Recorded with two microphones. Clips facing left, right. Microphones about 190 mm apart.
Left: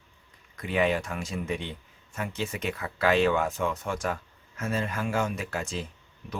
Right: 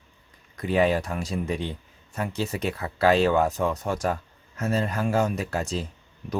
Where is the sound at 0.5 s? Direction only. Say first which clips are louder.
Right 4 dB; 35° right (ahead or behind).